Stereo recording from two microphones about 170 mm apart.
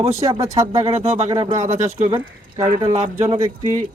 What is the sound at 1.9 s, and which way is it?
Speech, 30° right (ahead or behind).